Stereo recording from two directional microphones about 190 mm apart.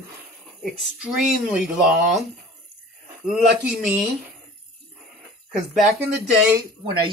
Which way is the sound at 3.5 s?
5° right (ahead or behind).